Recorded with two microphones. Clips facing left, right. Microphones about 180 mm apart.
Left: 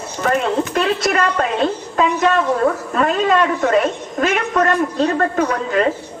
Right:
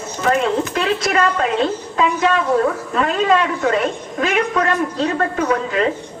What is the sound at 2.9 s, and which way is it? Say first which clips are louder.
A woman's voice: right 2 dB; 45° left (ahead or behind).